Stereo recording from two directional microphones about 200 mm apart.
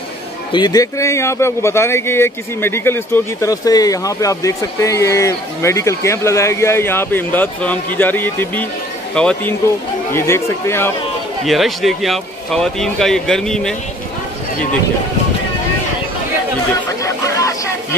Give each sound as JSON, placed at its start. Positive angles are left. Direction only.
{"t": 0.5, "sound": "a man's voice", "side_deg": 20}
{"t": 11.4, "sound": "speech", "side_deg": 0}
{"t": 17.0, "sound": "a sound", "side_deg": 15}